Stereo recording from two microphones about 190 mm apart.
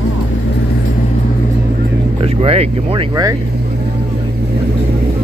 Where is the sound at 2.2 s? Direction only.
30° right (ahead or behind).